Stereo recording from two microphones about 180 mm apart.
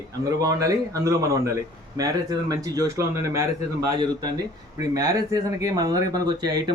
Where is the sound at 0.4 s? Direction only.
20° right (ahead or behind).